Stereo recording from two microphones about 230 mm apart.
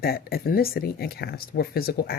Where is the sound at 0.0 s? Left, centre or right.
Left.